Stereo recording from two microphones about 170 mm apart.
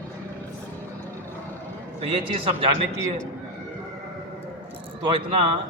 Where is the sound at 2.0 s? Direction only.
30° right (ahead or behind).